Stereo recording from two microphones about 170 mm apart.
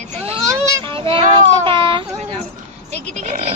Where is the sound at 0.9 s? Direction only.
30° right (ahead or behind).